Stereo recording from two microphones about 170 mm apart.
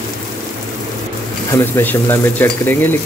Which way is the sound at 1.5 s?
15° left (ahead or behind).